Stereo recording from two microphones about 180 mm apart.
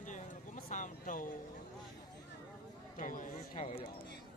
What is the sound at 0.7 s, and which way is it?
Speech, 45° left (ahead or behind).